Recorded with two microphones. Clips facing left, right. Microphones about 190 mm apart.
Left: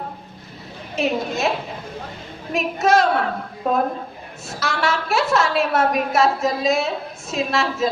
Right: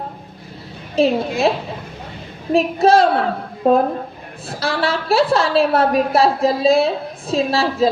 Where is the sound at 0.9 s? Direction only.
30° right (ahead or behind).